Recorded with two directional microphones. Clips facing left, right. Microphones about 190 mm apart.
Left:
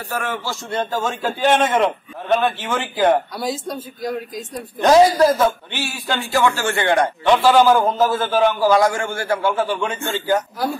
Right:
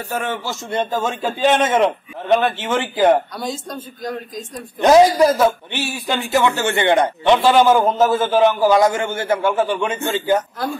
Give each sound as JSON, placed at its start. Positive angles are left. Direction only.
{"t": 0.1, "sound": "a man's voice", "side_deg": -20}
{"t": 3.3, "sound": "speech", "side_deg": 5}
{"t": 4.7, "sound": "a man's voice", "side_deg": -15}